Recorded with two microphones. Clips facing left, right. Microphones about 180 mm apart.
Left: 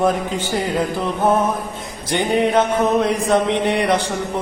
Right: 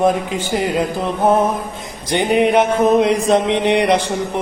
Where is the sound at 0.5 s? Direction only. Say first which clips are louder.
Right 3 dB; 15° right (ahead or behind).